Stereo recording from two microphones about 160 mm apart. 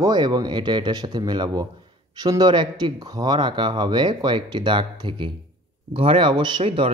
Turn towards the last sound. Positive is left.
turn(degrees=-35)  # may be behind; listen again after turning